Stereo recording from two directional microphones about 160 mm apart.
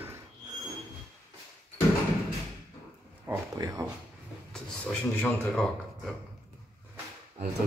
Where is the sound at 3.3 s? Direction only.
20° right (ahead or behind).